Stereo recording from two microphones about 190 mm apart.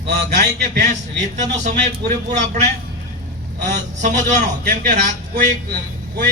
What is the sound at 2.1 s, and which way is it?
Speech, 40° right (ahead or behind).